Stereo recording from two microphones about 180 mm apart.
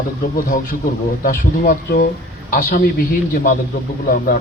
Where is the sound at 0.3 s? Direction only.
50° left (ahead or behind).